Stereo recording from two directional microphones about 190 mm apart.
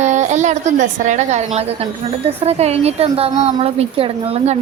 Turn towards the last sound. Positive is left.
turn(degrees=-30)  # may be behind; listen again after turning